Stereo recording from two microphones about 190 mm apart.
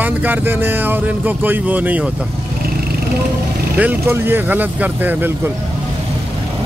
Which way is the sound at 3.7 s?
10° right (ahead or behind).